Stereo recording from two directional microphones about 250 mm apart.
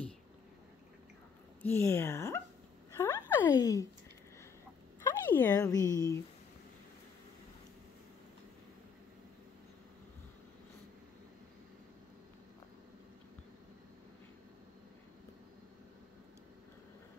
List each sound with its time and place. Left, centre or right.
1.6 s speech: centre
5.2 s speech: centre